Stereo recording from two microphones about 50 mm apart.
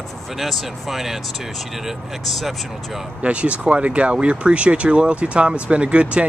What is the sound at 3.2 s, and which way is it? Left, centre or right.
Speech, right.